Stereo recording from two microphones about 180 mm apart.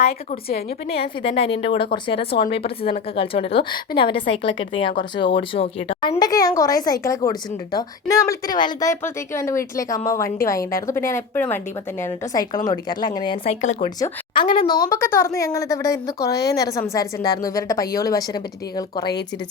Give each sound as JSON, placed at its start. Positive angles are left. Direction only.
{"t": 0.9, "sound": "a woman's voice", "side_deg": 30}
{"t": 13.4, "sound": "a woman's voice", "side_deg": 40}
{"t": 14.0, "sound": "a woman's voice", "side_deg": 25}